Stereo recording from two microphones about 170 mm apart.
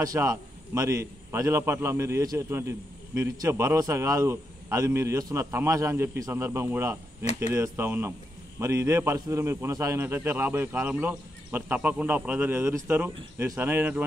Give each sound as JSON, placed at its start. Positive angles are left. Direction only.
{"t": 0.0, "sound": "a man's voice", "side_deg": -20}